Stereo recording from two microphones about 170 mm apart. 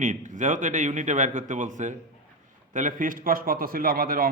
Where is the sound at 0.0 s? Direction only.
45° right (ahead or behind).